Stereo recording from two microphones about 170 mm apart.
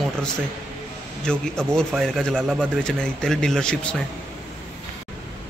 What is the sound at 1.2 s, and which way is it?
Speech, 5° left (ahead or behind).